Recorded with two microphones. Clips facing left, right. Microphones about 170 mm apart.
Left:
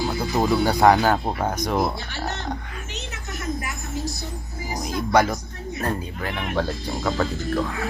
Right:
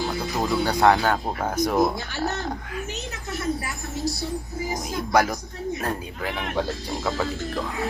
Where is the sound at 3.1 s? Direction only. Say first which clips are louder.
Right 2 dB; 35° right (ahead or behind).